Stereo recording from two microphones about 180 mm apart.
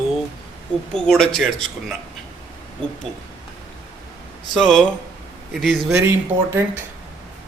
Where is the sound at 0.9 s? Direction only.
5° left (ahead or behind).